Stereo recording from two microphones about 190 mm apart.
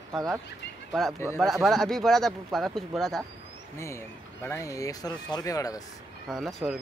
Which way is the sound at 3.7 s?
15° left (ahead or behind).